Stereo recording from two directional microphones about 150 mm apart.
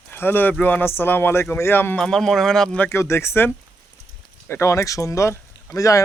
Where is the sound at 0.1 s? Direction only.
15° left (ahead or behind).